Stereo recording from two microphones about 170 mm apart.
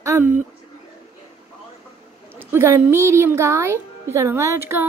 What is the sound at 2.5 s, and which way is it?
Speech, 15° right (ahead or behind).